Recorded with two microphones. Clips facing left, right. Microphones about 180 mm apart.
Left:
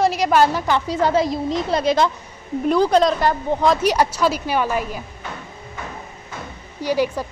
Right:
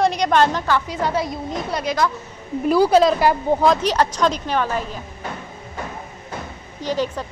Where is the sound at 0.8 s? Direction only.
25° left (ahead or behind).